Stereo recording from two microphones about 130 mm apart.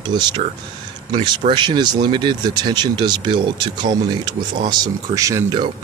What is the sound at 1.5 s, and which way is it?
Speech, 35° right (ahead or behind).